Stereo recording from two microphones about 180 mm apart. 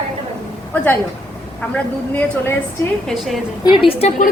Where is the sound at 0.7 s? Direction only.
10° left (ahead or behind).